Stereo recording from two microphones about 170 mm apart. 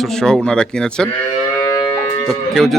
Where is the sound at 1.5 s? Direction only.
15° left (ahead or behind).